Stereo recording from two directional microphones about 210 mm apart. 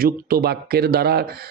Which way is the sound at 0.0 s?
45° right (ahead or behind).